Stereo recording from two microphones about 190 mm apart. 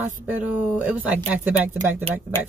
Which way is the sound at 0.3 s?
10° right (ahead or behind).